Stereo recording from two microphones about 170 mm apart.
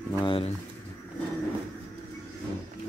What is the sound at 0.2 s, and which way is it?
Speech, 30° left (ahead or behind).